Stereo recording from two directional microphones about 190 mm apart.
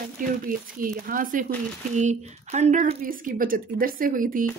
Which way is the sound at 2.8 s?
50° right (ahead or behind).